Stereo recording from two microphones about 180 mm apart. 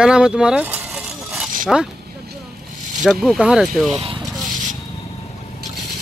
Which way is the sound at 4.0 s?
30° right (ahead or behind).